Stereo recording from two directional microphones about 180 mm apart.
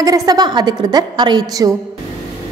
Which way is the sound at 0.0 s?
20° right (ahead or behind).